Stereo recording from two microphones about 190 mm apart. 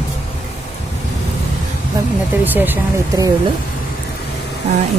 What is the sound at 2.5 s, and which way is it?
Speech, 10° right (ahead or behind).